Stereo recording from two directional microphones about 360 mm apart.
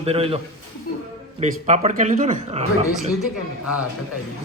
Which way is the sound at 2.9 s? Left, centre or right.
Centre.